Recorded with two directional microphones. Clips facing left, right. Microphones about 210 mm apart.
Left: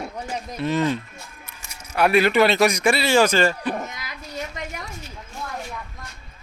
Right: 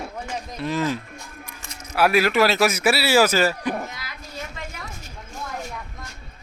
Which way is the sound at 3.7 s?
20° left (ahead or behind).